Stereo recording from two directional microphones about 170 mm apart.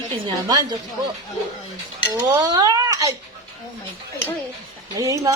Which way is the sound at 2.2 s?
25° right (ahead or behind).